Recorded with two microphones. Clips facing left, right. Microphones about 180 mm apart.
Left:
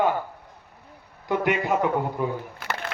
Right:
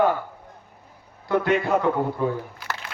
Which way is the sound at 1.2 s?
15° left (ahead or behind).